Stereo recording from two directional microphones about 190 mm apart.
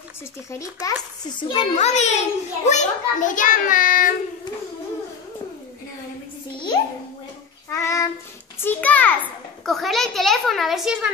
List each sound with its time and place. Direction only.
0.5 s a child's voice: 15° left (ahead or behind)
1.4 s a child's voice: 30° left (ahead or behind); by 4.1 s 45° left (ahead or behind)
7.7 s a child's voice: 15° left (ahead or behind); by 11.1 s 5° right (ahead or behind)